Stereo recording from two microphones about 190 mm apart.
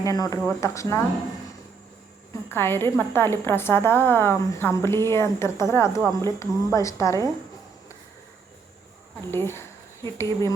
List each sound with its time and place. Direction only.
0.0 s a woman's voice: 20° left (ahead or behind)
2.5 s a woman's voice: 10° left (ahead or behind)
9.3 s speech: 10° left (ahead or behind)